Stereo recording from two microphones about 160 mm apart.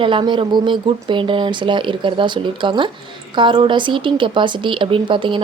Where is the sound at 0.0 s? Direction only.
30° right (ahead or behind).